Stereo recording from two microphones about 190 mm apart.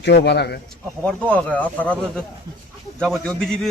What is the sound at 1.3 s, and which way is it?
Speech, 5° left (ahead or behind).